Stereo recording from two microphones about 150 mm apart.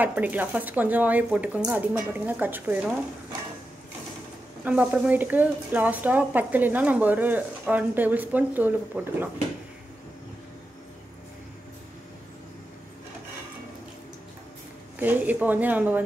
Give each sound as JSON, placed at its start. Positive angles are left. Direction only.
{"t": 0.0, "sound": "speech", "side_deg": -10}
{"t": 4.6, "sound": "speech", "side_deg": -10}
{"t": 15.0, "sound": "speech", "side_deg": -10}